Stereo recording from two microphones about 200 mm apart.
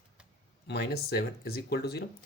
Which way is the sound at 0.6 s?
55° left (ahead or behind).